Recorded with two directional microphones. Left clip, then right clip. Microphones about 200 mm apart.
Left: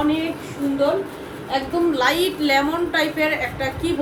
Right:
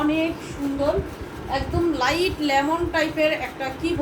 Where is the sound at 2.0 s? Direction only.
25° left (ahead or behind).